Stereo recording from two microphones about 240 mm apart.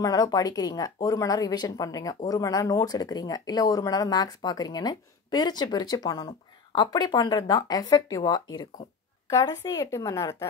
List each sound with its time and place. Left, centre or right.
0.0 s speech: centre